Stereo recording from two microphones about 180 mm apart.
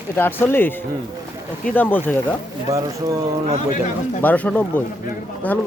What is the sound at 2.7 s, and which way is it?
Speech, 20° right (ahead or behind).